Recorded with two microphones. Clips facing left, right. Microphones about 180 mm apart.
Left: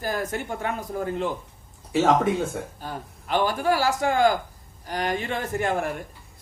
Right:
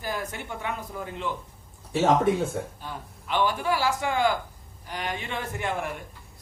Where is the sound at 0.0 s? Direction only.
45° left (ahead or behind).